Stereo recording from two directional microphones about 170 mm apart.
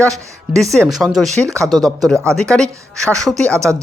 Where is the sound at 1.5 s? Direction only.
20° right (ahead or behind).